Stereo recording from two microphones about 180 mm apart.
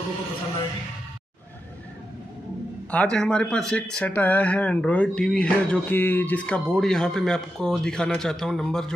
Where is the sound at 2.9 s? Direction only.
5° left (ahead or behind).